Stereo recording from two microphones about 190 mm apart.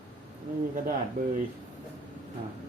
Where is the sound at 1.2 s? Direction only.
45° right (ahead or behind).